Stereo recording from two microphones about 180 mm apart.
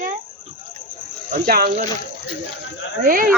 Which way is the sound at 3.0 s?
50° right (ahead or behind).